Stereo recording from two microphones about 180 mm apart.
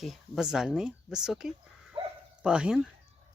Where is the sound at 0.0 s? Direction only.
Centre (ahead or behind).